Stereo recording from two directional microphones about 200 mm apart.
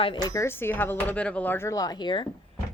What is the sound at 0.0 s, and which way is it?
Speech, 20° left (ahead or behind).